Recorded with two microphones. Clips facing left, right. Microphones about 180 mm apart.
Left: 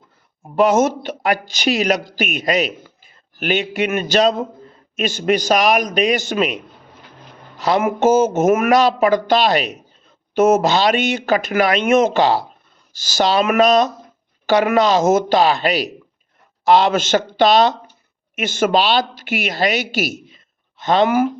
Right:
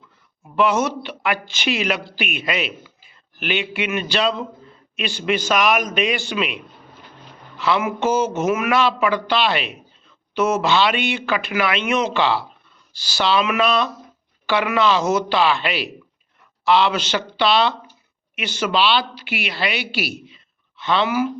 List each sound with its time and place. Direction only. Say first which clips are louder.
0.4 s a woman's voice: left 5 dB; 40° left (ahead or behind)